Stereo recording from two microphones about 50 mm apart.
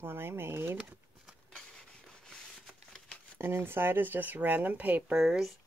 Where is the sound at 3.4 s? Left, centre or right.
Right.